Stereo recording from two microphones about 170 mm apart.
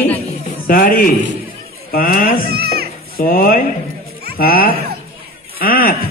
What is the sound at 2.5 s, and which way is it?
Children playing, 70° right (ahead or behind).